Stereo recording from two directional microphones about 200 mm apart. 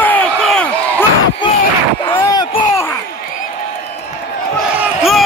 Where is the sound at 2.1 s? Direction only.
15° left (ahead or behind).